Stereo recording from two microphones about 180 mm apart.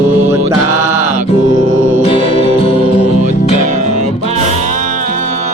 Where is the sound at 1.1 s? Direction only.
40° right (ahead or behind).